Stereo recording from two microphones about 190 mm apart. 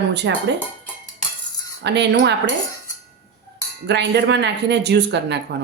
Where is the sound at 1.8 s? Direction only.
65° right (ahead or behind).